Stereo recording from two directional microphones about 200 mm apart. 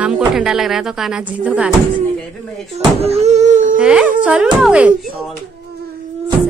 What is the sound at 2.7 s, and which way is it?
Speech, 30° right (ahead or behind).